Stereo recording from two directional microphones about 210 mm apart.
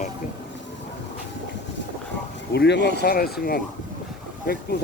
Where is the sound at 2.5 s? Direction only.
55° left (ahead or behind).